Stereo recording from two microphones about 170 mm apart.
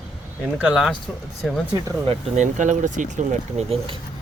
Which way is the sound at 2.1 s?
45° right (ahead or behind).